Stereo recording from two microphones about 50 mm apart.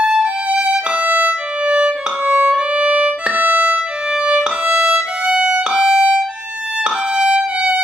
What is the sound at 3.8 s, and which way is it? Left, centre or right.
Violin, centre.